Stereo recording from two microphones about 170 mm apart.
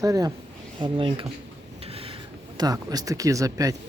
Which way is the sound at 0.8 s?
30° right (ahead or behind).